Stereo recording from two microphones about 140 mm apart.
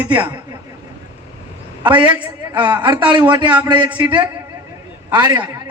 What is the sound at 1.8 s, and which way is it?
A man's voice, 35° right (ahead or behind).